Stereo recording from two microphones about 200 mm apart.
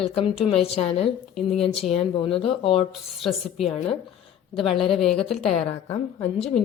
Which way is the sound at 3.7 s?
30° left (ahead or behind).